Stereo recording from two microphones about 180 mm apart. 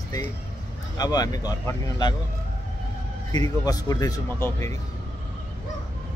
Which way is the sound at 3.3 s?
20° left (ahead or behind).